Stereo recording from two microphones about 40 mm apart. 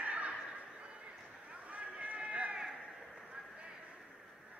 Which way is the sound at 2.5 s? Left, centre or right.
Right.